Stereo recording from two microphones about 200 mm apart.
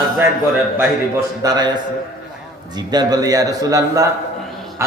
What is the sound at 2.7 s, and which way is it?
A man's voice, 20° right (ahead or behind).